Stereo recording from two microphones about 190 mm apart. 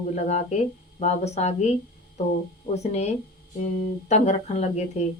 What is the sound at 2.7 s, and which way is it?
Speech, 35° left (ahead or behind).